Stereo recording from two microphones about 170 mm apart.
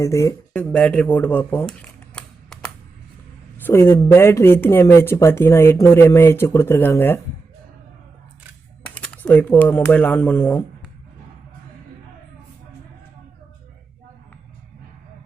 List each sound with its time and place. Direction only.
0.0 s speech: 20° left (ahead or behind)
0.5 s speech: 5° left (ahead or behind)
8.8 s speech: 5° left (ahead or behind)